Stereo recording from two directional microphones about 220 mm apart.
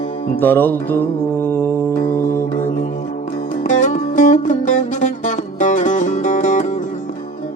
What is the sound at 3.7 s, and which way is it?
Music, 35° left (ahead or behind).